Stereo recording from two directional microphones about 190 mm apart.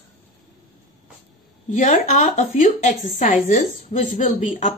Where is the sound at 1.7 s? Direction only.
40° left (ahead or behind).